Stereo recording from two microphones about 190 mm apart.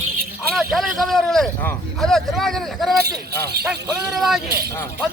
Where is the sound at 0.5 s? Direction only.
Centre (ahead or behind).